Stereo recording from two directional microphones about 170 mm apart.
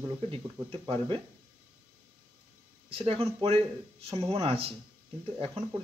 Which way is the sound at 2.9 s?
35° right (ahead or behind).